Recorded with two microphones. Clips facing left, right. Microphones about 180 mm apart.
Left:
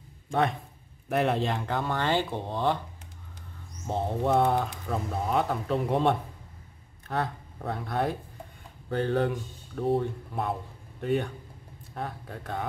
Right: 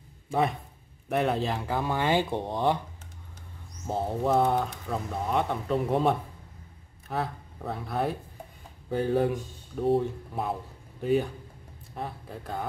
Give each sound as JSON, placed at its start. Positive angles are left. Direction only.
{"t": 0.3, "sound": "speech", "side_deg": 0}
{"t": 3.8, "sound": "speech", "side_deg": -5}